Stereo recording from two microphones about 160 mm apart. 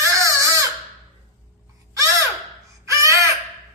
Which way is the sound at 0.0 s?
20° right (ahead or behind).